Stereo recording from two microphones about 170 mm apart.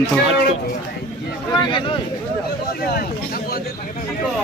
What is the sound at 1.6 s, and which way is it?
Speech, 30° left (ahead or behind).